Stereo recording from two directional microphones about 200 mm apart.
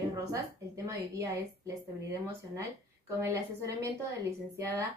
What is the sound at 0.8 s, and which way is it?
Speech, 15° right (ahead or behind).